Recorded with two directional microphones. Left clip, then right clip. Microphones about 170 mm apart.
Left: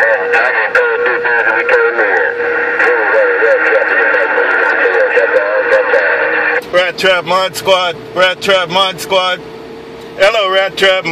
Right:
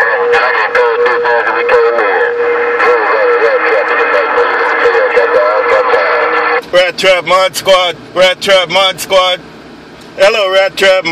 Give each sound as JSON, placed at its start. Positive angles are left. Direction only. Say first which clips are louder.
{"t": 0.0, "sound": "music", "louder": "right 1 dB", "side_deg": -45}
{"t": 10.2, "sound": "speech", "louder": "right 2 dB", "side_deg": -35}